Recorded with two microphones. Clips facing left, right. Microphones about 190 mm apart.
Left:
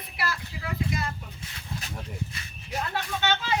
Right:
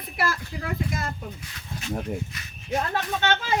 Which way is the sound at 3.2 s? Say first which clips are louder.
Right 1 dB; 50° right (ahead or behind).